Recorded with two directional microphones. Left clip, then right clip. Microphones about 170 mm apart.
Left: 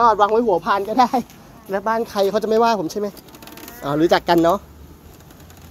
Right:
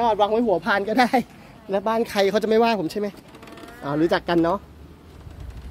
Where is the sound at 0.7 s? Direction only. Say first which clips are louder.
Left 3 dB; 35° right (ahead or behind); by 3.2 s 15° right (ahead or behind).